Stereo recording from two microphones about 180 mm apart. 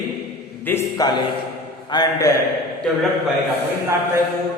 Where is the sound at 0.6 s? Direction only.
15° left (ahead or behind).